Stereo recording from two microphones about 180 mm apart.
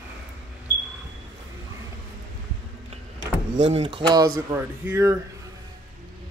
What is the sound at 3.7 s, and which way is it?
Speech, 30° right (ahead or behind).